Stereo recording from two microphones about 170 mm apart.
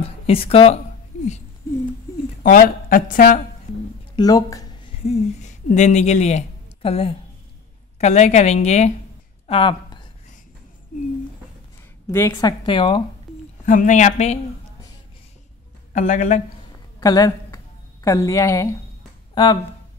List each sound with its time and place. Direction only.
0.0 s speech: 35° left (ahead or behind)
2.4 s speech: 55° left (ahead or behind)
4.2 s a sound: 20° left (ahead or behind)
5.0 s a woman's voice: 45° left (ahead or behind)
9.5 s speech: 30° left (ahead or behind)
12.1 s a woman's voice: 15° left (ahead or behind)
13.7 s a woman's voice: 50° left (ahead or behind)
15.9 s speech: 45° left (ahead or behind)
17.0 s a woman's voice: 20° left (ahead or behind)